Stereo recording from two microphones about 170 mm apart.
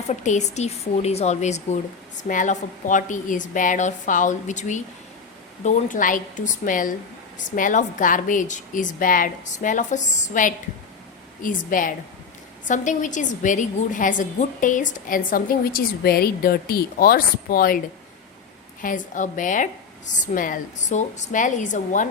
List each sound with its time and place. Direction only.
0.1 s a woman's voice: 45° left (ahead or behind)
18.8 s a woman's voice: 50° left (ahead or behind)